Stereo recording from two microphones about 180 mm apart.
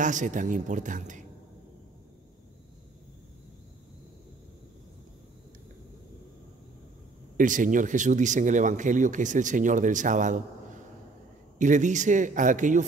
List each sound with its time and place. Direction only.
0.0 s speech: 45° right (ahead or behind)
7.3 s speech: 45° right (ahead or behind)
11.5 s speech: 45° right (ahead or behind)